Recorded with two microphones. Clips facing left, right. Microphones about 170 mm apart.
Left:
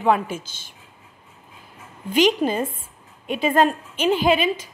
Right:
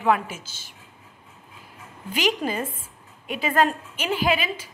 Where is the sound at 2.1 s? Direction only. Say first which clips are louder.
Left 6 dB; 25° left (ahead or behind).